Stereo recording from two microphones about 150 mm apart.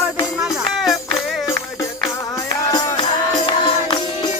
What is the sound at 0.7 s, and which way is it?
Music, centre (ahead or behind).